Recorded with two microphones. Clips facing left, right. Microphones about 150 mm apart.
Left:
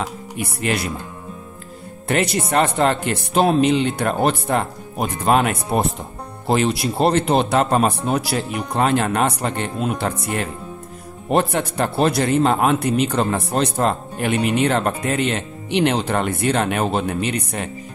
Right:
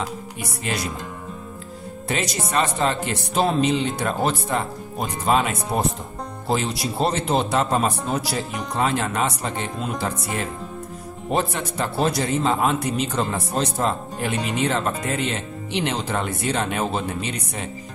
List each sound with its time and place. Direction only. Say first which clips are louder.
0.4 s a man's voice: left 6 dB; 60° left (ahead or behind)
2.0 s a man's voice: left 6 dB; 60° left (ahead or behind)
11.3 s a man's voice: left 5 dB; 60° left (ahead or behind)